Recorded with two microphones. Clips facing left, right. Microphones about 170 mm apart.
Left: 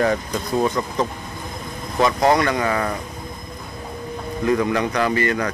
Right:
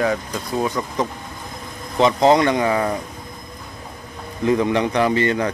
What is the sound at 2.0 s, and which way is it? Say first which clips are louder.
Speech: right 3 dB; 20° right (ahead or behind).